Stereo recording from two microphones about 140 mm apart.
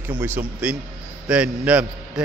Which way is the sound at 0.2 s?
15° right (ahead or behind).